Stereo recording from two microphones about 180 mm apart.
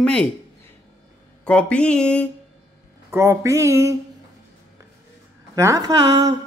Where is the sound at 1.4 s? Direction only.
5° left (ahead or behind).